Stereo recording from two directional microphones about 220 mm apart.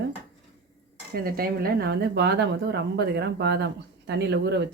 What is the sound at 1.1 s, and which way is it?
Speech, 45° right (ahead or behind).